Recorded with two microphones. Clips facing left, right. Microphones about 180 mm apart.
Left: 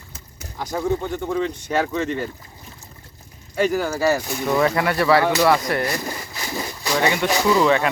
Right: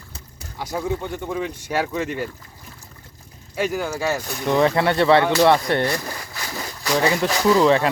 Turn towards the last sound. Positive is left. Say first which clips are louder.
# right 1 dB
turn(degrees=-30)  # may be behind; listen again after turning